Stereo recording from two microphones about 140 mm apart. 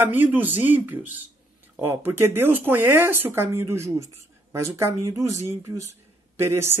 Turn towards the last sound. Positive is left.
turn(degrees=-20)  # may be behind; listen again after turning